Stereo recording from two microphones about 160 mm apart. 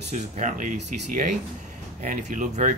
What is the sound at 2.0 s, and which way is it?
Speech, 55° right (ahead or behind).